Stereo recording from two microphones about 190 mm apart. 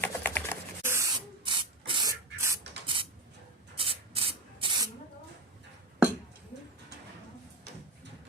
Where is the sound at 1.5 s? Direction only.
25° right (ahead or behind).